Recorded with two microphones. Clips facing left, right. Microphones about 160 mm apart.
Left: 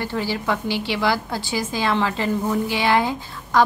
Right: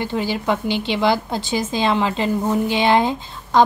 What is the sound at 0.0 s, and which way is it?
A woman's voice, 15° right (ahead or behind).